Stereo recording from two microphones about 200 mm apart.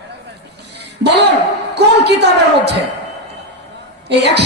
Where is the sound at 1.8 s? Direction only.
55° right (ahead or behind).